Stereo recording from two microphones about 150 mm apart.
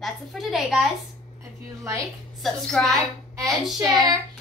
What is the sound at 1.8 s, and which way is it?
Child singing, 20° right (ahead or behind).